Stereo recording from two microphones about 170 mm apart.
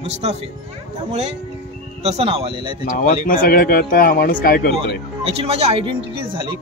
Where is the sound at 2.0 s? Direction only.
40° right (ahead or behind).